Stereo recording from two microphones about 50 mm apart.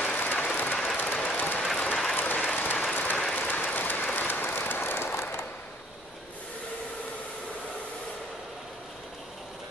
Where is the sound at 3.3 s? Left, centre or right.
Left.